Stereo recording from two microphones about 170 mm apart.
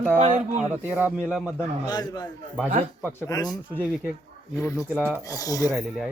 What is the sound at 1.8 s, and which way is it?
Speech, 25° left (ahead or behind).